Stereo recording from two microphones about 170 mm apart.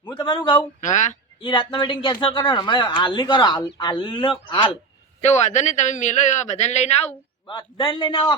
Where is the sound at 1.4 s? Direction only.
30° left (ahead or behind).